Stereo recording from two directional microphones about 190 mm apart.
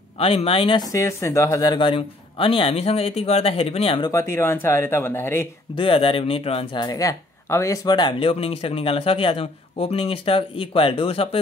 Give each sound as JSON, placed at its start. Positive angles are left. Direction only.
{"t": 0.2, "sound": "speech", "side_deg": 30}
{"t": 0.9, "sound": "speech", "side_deg": 15}
{"t": 4.1, "sound": "speech", "side_deg": 15}
{"t": 5.8, "sound": "speech", "side_deg": 30}
{"t": 6.9, "sound": "speech", "side_deg": 15}